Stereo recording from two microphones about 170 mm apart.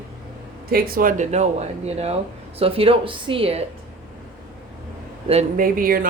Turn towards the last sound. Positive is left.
turn(degrees=-55)  # may be behind; listen again after turning